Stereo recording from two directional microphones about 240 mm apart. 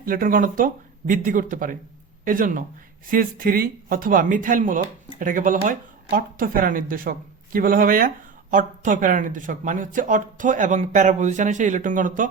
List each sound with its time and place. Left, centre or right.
0.0 s speech: right